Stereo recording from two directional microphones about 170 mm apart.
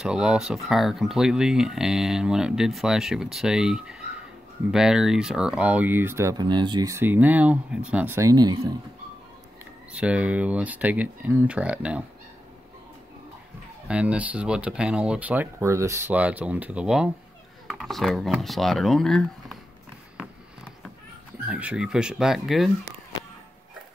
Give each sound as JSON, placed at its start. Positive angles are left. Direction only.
{"t": 0.0, "sound": "speech", "side_deg": -5}
{"t": 9.9, "sound": "speech", "side_deg": -5}
{"t": 13.8, "sound": "speech", "side_deg": -5}
{"t": 21.5, "sound": "speech", "side_deg": -5}